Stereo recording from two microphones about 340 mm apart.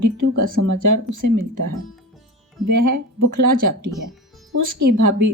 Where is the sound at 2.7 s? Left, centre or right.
Right.